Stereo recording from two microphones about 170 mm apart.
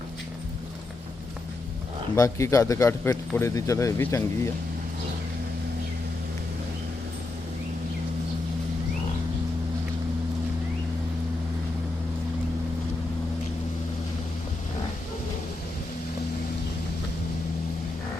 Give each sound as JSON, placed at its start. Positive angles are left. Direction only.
{"t": 2.1, "sound": "speech", "side_deg": 20}